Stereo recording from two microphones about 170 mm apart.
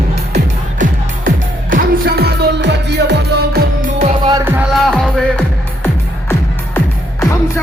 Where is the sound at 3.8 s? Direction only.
45° right (ahead or behind).